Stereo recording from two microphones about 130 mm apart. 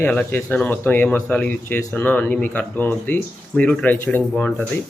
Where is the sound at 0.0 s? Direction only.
10° left (ahead or behind).